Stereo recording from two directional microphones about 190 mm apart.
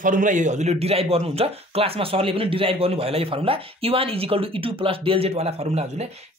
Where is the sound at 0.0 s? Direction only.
45° right (ahead or behind).